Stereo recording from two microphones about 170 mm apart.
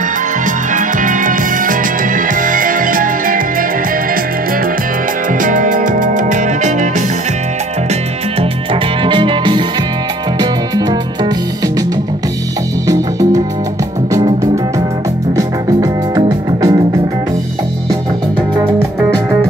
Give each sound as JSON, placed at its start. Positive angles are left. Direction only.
{"t": 0.7, "sound": "music", "side_deg": -50}
{"t": 5.4, "sound": "music", "side_deg": -50}
{"t": 9.0, "sound": "music", "side_deg": -30}
{"t": 12.8, "sound": "music", "side_deg": -20}